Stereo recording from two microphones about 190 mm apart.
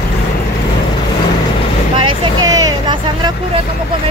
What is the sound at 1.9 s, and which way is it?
Speech, 25° right (ahead or behind).